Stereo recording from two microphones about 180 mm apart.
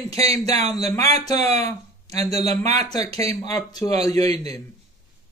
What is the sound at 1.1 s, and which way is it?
Speech, 35° right (ahead or behind).